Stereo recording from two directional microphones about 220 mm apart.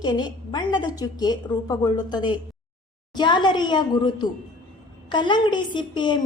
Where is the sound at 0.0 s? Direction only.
20° left (ahead or behind).